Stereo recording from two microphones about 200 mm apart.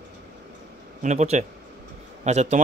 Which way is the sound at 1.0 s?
35° right (ahead or behind).